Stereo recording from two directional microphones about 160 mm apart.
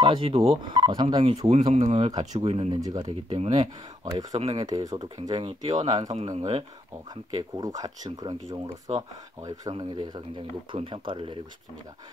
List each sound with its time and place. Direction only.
0.0 s speech: 30° right (ahead or behind)
1.7 s speech: 45° right (ahead or behind)
2.7 s speech: 25° right (ahead or behind)
3.3 s speech: 45° right (ahead or behind)
3.5 s speech: 25° right (ahead or behind)
4.3 s speech: 40° right (ahead or behind)
4.6 s speech: 20° right (ahead or behind)
6.3 s speech: 35° right (ahead or behind)
7.1 s speech: 20° right (ahead or behind)
8.6 s speech: 40° right (ahead or behind)
9.8 s speech: 30° right (ahead or behind)